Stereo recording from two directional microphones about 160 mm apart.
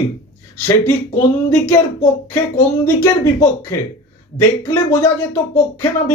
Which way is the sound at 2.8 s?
20° left (ahead or behind).